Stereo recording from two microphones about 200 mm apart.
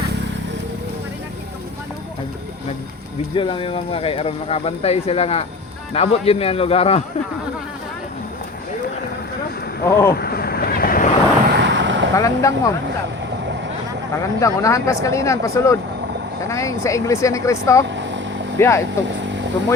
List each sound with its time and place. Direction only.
3.3 s speech: 25° left (ahead or behind)
9.8 s speech: 15° left (ahead or behind)
10.2 s waves: 50° left (ahead or behind)
11.5 s a sound: 65° right (ahead or behind)
12.1 s speech: 15° left (ahead or behind)
14.1 s speech: 15° left (ahead or behind)
17.8 s vehicle: 65° right (ahead or behind)
18.6 s speech: 15° left (ahead or behind)
19.2 s vehicle: 65° right (ahead or behind)